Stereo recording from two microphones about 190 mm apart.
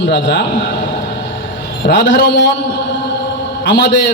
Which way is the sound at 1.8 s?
65° left (ahead or behind).